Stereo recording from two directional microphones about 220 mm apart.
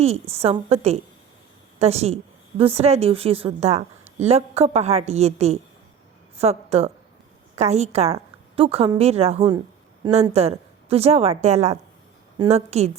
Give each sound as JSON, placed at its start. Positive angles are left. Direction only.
{"t": 0.0, "sound": "a woman's voice", "side_deg": -30}